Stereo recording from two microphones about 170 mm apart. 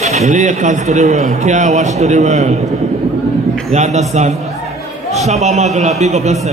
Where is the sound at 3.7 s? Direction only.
40° right (ahead or behind).